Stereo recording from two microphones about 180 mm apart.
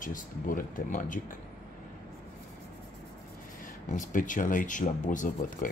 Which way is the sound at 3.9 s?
45° left (ahead or behind).